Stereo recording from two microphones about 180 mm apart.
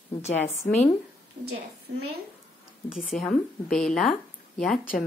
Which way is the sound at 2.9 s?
Centre (ahead or behind).